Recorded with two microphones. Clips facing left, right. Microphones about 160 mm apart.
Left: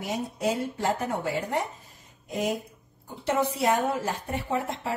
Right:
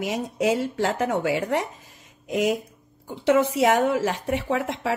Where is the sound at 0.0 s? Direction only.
90° right.